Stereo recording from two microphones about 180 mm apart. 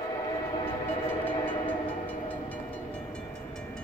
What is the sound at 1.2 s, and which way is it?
Train, 10° left (ahead or behind).